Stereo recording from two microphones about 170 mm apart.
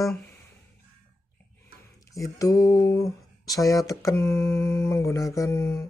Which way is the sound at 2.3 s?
20° left (ahead or behind).